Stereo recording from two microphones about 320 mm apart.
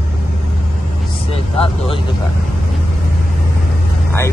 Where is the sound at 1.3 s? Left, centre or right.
Centre.